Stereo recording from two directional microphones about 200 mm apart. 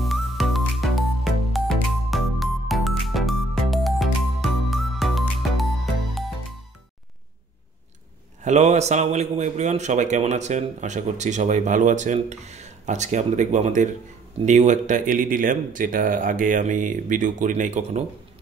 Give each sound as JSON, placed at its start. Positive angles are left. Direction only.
{"t": 0.0, "sound": "music", "side_deg": 0}
{"t": 8.5, "sound": "speech", "side_deg": -35}